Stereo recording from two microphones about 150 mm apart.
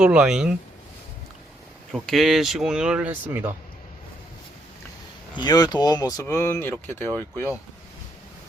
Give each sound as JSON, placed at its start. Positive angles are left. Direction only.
{"t": 0.0, "sound": "speech", "side_deg": -5}
{"t": 1.9, "sound": "speech", "side_deg": 0}
{"t": 5.3, "sound": "speech", "side_deg": 30}